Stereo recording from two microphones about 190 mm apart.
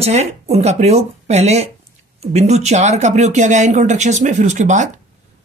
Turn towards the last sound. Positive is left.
turn(degrees=-40)  # may be behind; listen again after turning